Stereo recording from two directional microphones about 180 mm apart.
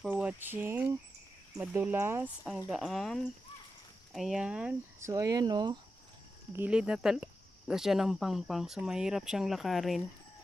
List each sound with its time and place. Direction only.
0.0 s speech: 10° right (ahead or behind)
2.4 s speech: centre (ahead or behind)
5.0 s speech: 20° right (ahead or behind)
6.5 s speech: 10° right (ahead or behind)